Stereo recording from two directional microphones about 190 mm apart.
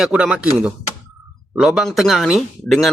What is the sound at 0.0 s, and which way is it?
Speech, 5° right (ahead or behind).